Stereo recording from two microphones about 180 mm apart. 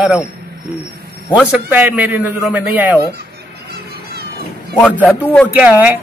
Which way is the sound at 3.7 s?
60° right (ahead or behind).